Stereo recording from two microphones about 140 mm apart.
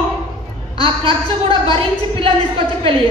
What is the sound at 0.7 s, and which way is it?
A woman's voice, 40° right (ahead or behind).